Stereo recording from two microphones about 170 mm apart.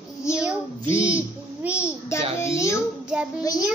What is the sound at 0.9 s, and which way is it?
Speech, 15° left (ahead or behind).